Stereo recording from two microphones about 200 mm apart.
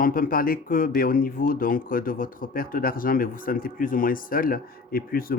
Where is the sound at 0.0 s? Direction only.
45° left (ahead or behind).